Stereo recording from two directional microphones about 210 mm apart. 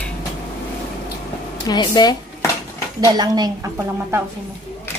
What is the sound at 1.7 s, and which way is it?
Speech, 20° left (ahead or behind).